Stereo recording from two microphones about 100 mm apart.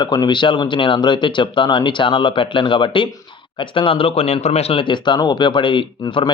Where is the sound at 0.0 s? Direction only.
45° left (ahead or behind).